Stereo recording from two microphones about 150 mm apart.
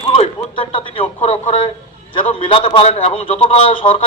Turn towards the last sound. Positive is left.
turn(degrees=35)  # may be behind; listen again after turning